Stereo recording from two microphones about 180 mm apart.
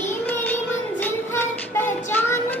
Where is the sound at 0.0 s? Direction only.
10° left (ahead or behind).